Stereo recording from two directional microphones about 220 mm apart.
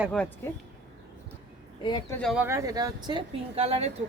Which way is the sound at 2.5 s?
15° right (ahead or behind).